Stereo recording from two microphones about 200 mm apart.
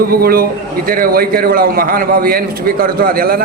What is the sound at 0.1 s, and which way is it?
A man's voice, 50° right (ahead or behind).